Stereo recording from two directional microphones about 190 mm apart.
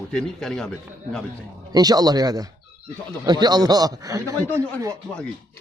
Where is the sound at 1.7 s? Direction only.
20° right (ahead or behind).